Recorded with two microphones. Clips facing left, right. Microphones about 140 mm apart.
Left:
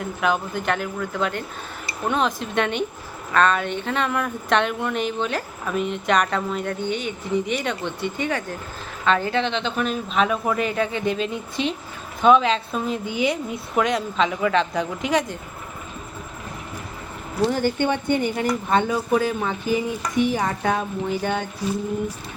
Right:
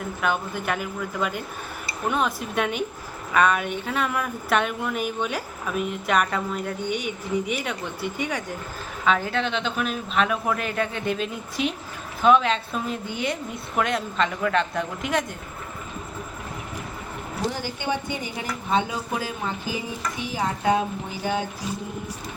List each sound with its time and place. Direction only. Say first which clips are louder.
0.2 s a woman's voice: left 3 dB; centre (ahead or behind)
9.0 s a woman's voice: left 2 dB; centre (ahead or behind)
17.5 s speech: left 7 dB; 55° left (ahead or behind)
20.3 s speech: even; 60° left (ahead or behind)